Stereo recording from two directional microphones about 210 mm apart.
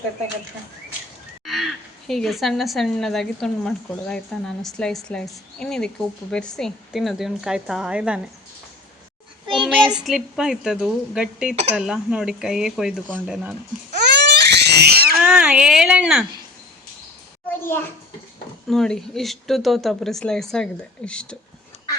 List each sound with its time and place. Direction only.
1.5 s speech: centre (ahead or behind)
9.6 s speech: centre (ahead or behind)
13.9 s baby cry: 55° right (ahead or behind)
15.2 s speech: 5° right (ahead or behind)
17.6 s a child's voice: 10° left (ahead or behind)